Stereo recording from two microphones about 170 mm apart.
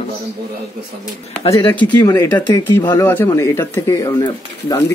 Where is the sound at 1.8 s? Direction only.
15° left (ahead or behind).